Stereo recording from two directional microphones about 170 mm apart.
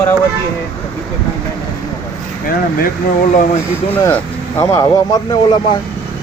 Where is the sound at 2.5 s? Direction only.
55° left (ahead or behind).